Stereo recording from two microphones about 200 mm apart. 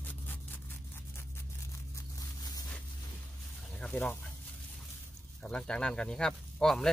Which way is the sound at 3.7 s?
5° left (ahead or behind).